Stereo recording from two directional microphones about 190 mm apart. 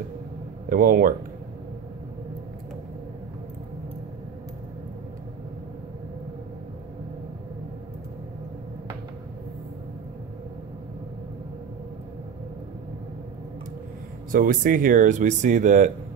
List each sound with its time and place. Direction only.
0.7 s speech: 50° right (ahead or behind)
14.3 s speech: 45° right (ahead or behind)